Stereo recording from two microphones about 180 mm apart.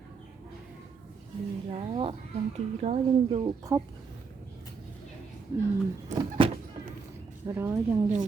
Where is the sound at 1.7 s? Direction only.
30° right (ahead or behind).